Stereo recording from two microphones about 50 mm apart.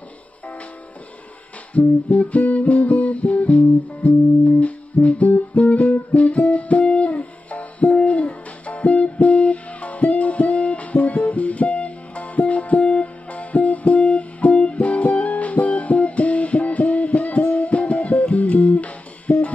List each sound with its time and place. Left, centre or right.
1.7 s music: left